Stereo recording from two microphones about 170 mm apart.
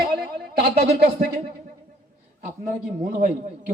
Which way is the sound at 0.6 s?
70° right (ahead or behind).